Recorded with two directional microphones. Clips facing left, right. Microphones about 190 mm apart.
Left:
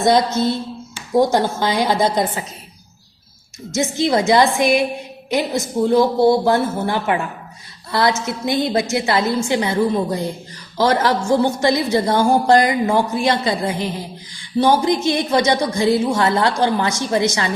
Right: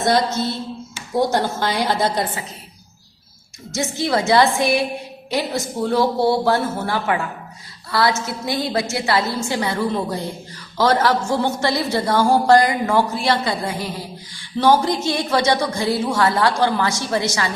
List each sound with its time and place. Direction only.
1.1 s a woman's voice: 15° left (ahead or behind)
3.8 s a woman's voice: 20° left (ahead or behind)